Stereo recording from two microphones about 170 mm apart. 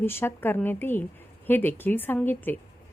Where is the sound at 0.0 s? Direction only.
15° left (ahead or behind).